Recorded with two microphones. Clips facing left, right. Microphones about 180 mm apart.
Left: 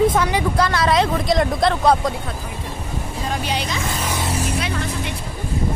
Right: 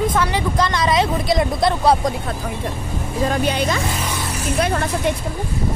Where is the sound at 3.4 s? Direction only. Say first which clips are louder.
Right 4 dB; 50° right (ahead or behind).